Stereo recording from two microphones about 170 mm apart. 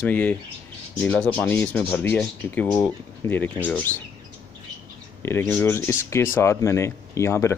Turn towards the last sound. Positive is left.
turn(degrees=15)  # may be behind; listen again after turning